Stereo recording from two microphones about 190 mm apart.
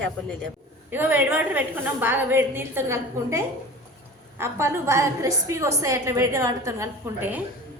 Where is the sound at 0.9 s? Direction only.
10° right (ahead or behind).